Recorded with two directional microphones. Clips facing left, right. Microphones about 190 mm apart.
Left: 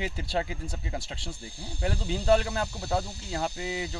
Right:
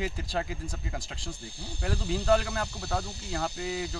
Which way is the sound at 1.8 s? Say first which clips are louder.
Left 1 dB; 25° left (ahead or behind).